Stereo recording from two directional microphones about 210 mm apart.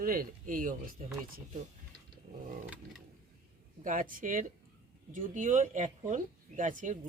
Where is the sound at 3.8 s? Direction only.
40° right (ahead or behind).